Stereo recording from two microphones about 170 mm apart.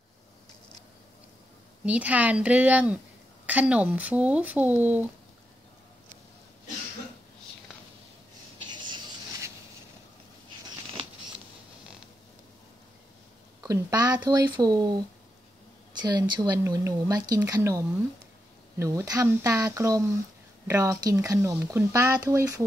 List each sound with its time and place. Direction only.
1.9 s speech: 10° right (ahead or behind)
8.7 s a sound: 25° right (ahead or behind)
13.6 s speech: 20° right (ahead or behind)
16.0 s speech: 25° right (ahead or behind)